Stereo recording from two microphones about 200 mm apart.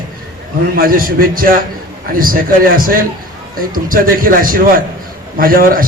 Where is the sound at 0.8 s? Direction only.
45° right (ahead or behind).